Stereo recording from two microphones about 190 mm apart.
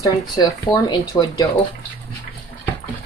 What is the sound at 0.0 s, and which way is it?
Speech, 20° left (ahead or behind).